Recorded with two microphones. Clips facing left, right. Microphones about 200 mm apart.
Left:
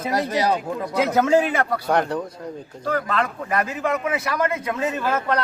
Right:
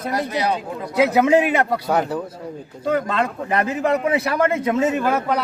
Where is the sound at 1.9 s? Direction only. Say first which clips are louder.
Even; 5° right (ahead or behind).